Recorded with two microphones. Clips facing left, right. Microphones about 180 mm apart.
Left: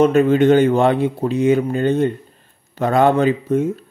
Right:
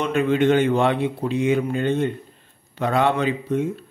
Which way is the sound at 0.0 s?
40° left (ahead or behind).